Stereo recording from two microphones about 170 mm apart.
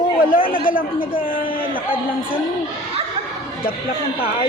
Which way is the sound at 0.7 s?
55° left (ahead or behind).